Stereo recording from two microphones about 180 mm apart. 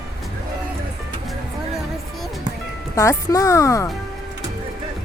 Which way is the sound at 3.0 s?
15° left (ahead or behind).